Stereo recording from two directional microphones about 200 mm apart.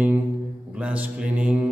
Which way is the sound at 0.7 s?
5° right (ahead or behind).